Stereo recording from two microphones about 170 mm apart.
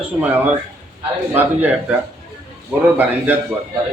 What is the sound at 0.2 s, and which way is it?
A man's voice, 10° right (ahead or behind).